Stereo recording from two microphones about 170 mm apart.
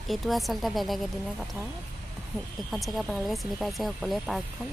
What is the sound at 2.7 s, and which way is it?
Speech, centre (ahead or behind).